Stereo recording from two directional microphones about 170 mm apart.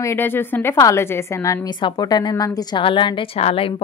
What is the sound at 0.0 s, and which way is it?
A woman's voice, 15° left (ahead or behind).